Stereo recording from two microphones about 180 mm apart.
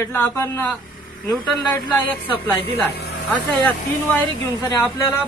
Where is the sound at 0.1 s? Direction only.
10° left (ahead or behind).